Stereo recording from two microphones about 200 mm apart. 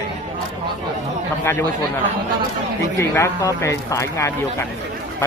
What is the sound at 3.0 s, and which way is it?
A man's voice, 15° left (ahead or behind).